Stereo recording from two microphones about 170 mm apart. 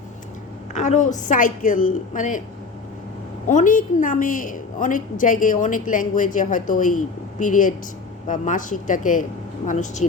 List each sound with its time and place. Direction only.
0.7 s a woman's voice: 45° left (ahead or behind)
3.4 s a woman's voice: 50° left (ahead or behind)